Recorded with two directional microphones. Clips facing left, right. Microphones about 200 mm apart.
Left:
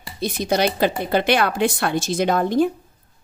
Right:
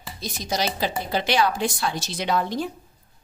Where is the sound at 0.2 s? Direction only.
60° left (ahead or behind).